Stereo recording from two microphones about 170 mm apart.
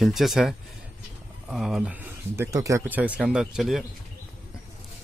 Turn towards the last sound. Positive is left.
turn(degrees=0)  # may be behind; listen again after turning